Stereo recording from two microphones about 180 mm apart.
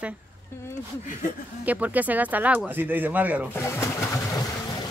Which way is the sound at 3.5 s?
15° left (ahead or behind).